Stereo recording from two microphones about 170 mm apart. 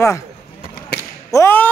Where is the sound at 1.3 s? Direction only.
15° left (ahead or behind).